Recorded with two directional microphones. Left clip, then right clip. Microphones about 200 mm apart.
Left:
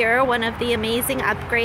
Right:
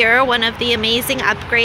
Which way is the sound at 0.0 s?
Centre (ahead or behind).